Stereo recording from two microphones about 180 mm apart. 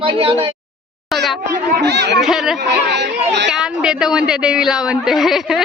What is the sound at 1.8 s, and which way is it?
Speech, 70° right (ahead or behind).